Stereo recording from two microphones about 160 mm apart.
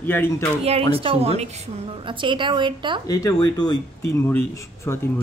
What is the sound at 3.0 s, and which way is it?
Speech, 25° left (ahead or behind).